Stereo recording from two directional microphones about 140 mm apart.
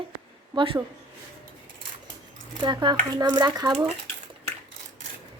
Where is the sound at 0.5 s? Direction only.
40° right (ahead or behind).